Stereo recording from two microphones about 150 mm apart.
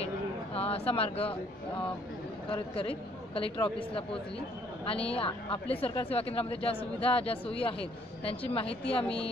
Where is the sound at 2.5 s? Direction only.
40° left (ahead or behind).